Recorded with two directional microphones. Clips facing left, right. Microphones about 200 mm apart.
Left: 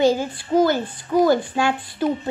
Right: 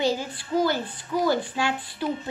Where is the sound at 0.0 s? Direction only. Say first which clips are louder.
Left 7 dB; 50° left (ahead or behind).